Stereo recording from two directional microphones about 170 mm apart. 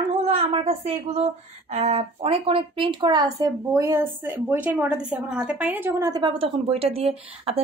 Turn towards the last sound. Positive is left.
turn(degrees=-35)  # may be behind; listen again after turning